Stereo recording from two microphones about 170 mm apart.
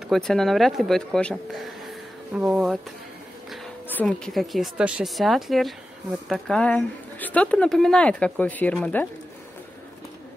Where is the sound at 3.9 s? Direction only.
5° left (ahead or behind).